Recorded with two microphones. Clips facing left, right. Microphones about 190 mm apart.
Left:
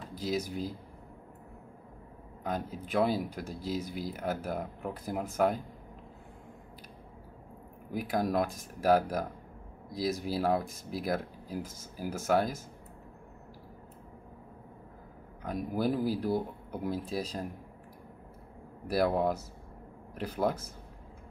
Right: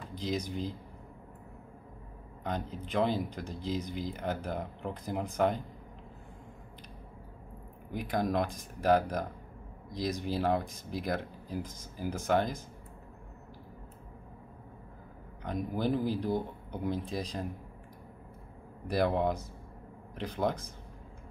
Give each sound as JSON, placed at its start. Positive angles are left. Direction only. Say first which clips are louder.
{"t": 0.1, "sound": "speech", "louder": "left 1 dB", "side_deg": 5}
{"t": 2.4, "sound": "speech", "louder": "left 1 dB", "side_deg": 5}
{"t": 7.9, "sound": "speech", "louder": "left 1 dB", "side_deg": 5}
{"t": 15.4, "sound": "speech", "louder": "left 1 dB", "side_deg": 10}
{"t": 18.9, "sound": "a man's voice", "louder": "left 1 dB", "side_deg": 5}